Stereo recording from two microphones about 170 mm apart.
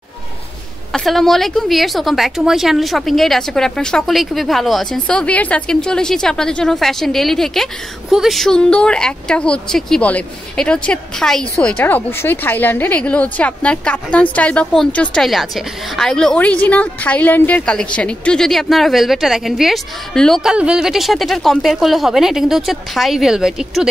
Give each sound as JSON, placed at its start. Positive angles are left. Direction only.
{"t": 0.9, "sound": "a woman's voice", "side_deg": 0}